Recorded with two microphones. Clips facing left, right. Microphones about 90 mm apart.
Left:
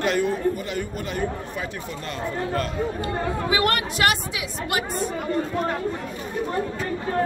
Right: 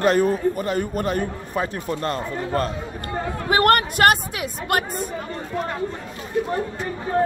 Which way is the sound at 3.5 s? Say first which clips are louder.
Right 8 dB; 50° right (ahead or behind).